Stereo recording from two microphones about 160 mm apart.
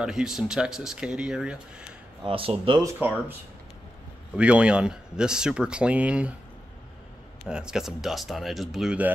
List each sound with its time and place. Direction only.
0.0 s speech: 5° right (ahead or behind)
2.2 s speech: 35° right (ahead or behind)
2.8 s speech: 10° right (ahead or behind)
4.4 s speech: 10° right (ahead or behind)
7.4 s speech: 5° right (ahead or behind)